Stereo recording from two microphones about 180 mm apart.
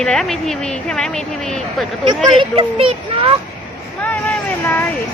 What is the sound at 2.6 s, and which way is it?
Speech, 30° right (ahead or behind).